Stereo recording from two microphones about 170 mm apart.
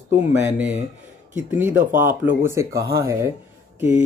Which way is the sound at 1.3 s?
10° right (ahead or behind).